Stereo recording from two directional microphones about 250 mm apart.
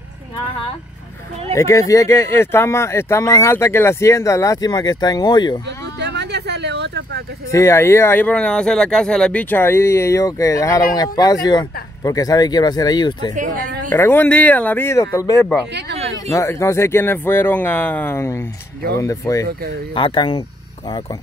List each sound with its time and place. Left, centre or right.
1.5 s speech: centre
5.7 s a sound: right
7.5 s speech: centre
13.3 s a woman's voice: right
13.8 s speech: centre
15.7 s speech: right
16.2 s speech: centre